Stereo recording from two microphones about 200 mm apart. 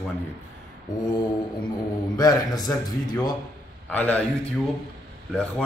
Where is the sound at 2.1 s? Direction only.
20° left (ahead or behind).